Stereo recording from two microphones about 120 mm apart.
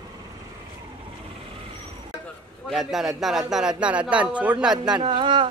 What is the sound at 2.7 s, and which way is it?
A man's voice, centre (ahead or behind).